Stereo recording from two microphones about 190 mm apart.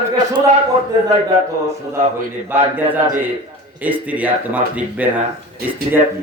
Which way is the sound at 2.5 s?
10° right (ahead or behind).